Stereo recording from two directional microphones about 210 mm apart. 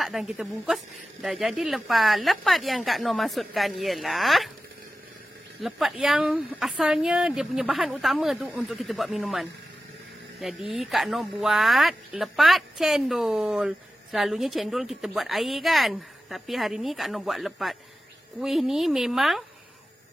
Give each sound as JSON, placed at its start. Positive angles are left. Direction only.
{"t": 0.0, "sound": "speech", "side_deg": 0}
{"t": 5.6, "sound": "speech", "side_deg": 0}